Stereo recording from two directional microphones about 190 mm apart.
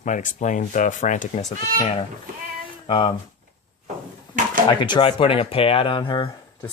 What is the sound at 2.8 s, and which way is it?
Speech, 25° left (ahead or behind).